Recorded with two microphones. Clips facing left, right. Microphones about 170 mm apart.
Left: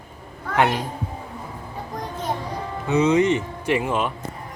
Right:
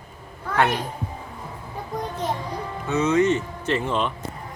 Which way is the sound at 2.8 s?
15° left (ahead or behind).